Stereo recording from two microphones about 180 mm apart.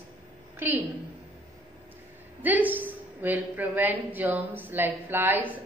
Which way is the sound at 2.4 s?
10° right (ahead or behind).